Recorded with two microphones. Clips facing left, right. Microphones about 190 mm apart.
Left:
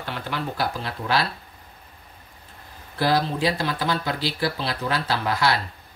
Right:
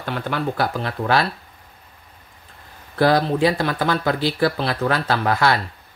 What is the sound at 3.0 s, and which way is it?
Speech, 55° right (ahead or behind).